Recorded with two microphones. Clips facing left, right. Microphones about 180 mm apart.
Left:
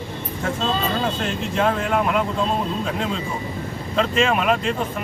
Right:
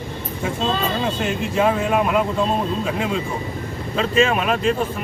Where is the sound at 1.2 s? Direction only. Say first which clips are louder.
Right 2 dB; 10° right (ahead or behind).